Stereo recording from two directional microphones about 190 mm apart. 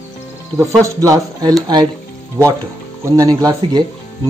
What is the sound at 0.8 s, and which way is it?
Speech, 15° right (ahead or behind).